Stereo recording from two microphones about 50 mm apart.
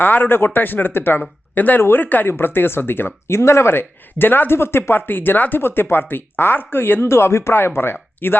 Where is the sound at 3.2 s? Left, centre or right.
Left.